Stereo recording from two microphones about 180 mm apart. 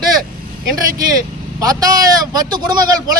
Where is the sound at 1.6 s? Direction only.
20° right (ahead or behind).